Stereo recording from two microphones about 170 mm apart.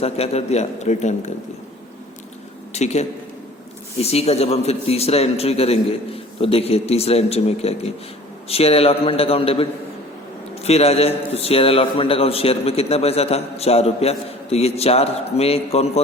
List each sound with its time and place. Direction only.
0.0 s a man's voice: 35° left (ahead or behind)
2.7 s a man's voice: 40° left (ahead or behind)